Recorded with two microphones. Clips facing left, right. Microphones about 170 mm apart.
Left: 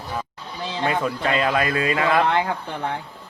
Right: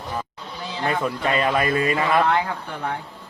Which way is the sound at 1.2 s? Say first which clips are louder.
Right 1 dB; 25° right (ahead or behind).